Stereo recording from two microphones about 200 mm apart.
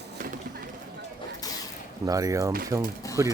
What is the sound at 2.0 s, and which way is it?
Speech, 15° right (ahead or behind).